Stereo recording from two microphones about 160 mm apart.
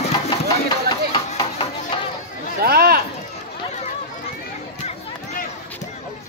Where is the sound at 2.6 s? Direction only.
70° right (ahead or behind).